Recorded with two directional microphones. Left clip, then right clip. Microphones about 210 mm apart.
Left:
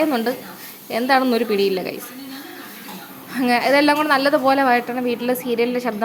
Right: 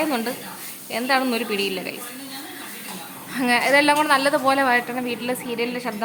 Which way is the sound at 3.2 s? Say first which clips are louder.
Left 2 dB; 15° left (ahead or behind).